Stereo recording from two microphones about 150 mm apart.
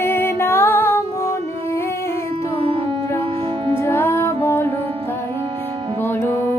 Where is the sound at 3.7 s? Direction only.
15° left (ahead or behind).